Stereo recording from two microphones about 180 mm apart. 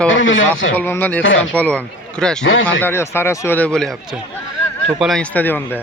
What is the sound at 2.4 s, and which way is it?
Speech, 90° left.